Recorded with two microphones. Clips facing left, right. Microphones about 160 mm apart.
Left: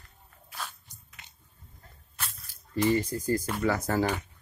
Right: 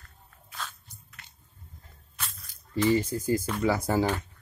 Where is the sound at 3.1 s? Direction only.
15° right (ahead or behind).